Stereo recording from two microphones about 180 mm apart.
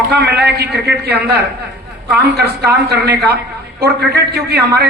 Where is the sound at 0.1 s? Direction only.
65° right (ahead or behind).